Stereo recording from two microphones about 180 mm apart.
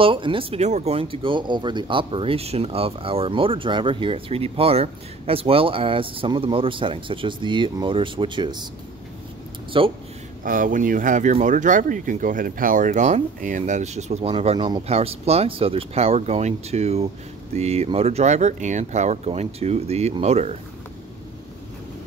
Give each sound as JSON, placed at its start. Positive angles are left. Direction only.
{"t": 0.0, "sound": "speech", "side_deg": -30}
{"t": 9.7, "sound": "speech", "side_deg": -30}
{"t": 10.4, "sound": "speech", "side_deg": -50}